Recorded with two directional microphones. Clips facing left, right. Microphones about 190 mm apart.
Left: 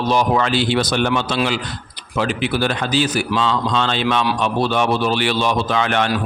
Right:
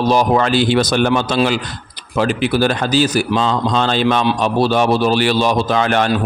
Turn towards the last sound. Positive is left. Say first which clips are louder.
# right 3 dB
turn(degrees=-40)  # may be behind; listen again after turning